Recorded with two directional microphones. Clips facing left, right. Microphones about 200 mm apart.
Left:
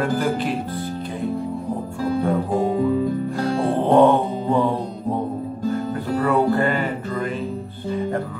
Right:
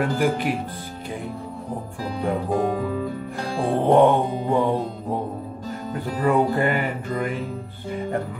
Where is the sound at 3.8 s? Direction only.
15° right (ahead or behind).